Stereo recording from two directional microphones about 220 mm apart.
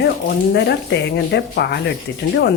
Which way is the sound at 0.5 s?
50° left (ahead or behind).